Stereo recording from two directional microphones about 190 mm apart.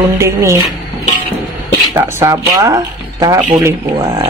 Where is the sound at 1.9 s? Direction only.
20° right (ahead or behind).